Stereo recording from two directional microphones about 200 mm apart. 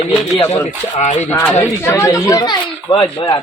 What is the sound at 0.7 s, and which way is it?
Speech, 35° left (ahead or behind).